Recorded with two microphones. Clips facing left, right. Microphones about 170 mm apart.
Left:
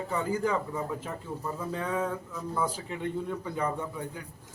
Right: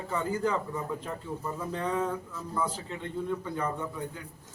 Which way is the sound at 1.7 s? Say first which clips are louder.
Right 1 dB; 5° left (ahead or behind).